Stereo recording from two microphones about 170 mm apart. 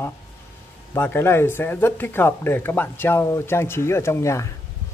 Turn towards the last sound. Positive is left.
turn(degrees=15)  # may be behind; listen again after turning